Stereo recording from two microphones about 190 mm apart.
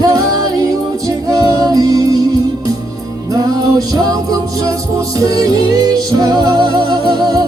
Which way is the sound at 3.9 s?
20° right (ahead or behind).